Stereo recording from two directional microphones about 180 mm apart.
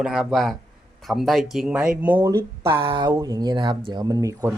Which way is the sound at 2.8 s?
25° right (ahead or behind).